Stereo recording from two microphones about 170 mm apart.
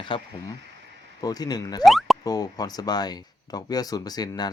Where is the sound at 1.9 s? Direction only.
Centre (ahead or behind).